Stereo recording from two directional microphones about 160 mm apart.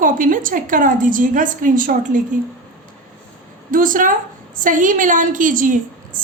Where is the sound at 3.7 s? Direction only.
55° right (ahead or behind).